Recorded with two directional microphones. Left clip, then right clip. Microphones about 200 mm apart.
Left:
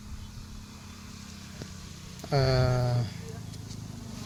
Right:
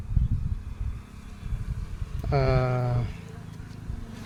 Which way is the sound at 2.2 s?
5° right (ahead or behind).